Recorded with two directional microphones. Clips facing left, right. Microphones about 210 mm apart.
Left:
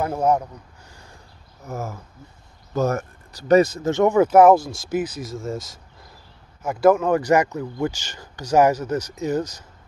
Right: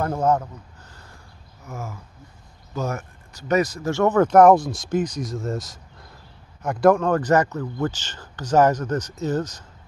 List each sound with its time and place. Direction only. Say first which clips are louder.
0.0 s speech: left 1 dB; 10° left (ahead or behind)
1.7 s a man's voice: left 4 dB; 40° left (ahead or behind); by 9.7 s 10° left (ahead or behind)